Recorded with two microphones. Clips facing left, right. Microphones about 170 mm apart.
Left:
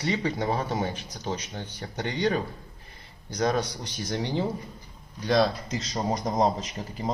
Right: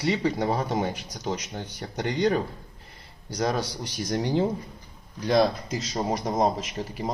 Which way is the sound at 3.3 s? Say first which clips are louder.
Left 1 dB; 5° right (ahead or behind).